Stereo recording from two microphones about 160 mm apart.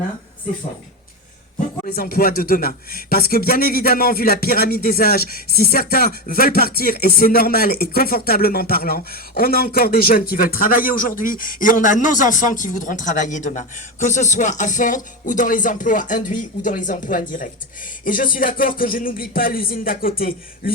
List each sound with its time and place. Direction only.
1.9 s speech: 70° left (ahead or behind)